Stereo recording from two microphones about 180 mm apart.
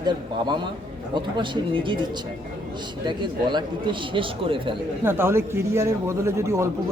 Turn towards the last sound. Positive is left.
turn(degrees=-15)  # may be behind; listen again after turning